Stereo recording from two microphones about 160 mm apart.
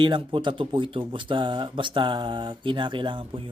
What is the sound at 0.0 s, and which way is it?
Speech, 30° right (ahead or behind).